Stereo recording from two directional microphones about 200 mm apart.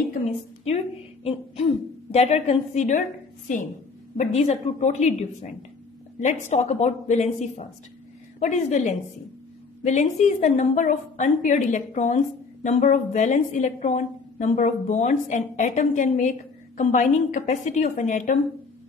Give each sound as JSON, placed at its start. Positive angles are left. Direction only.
{"t": 0.7, "sound": "a sound", "side_deg": 30}
{"t": 2.1, "sound": "a woman's voice", "side_deg": 30}
{"t": 4.2, "sound": "a woman's voice", "side_deg": 30}